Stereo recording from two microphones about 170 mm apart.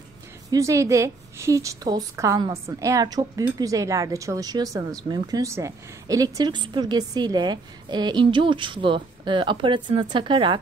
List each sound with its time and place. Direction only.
0.5 s a woman's voice: 20° right (ahead or behind)